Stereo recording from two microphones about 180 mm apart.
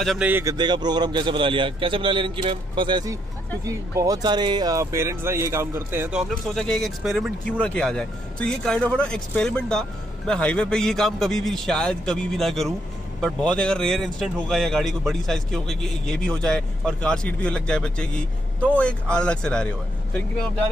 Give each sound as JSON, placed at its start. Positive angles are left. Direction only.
{"t": 0.0, "sound": "speech", "side_deg": 0}
{"t": 0.3, "sound": "a man's voice", "side_deg": -15}